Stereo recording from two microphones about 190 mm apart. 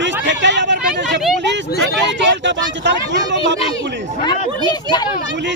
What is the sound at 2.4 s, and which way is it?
Speech, 70° right (ahead or behind).